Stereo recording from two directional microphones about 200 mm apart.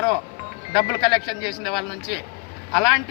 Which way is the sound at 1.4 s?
Centre (ahead or behind).